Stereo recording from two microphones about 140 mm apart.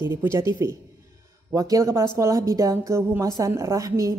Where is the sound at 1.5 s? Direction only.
25° right (ahead or behind).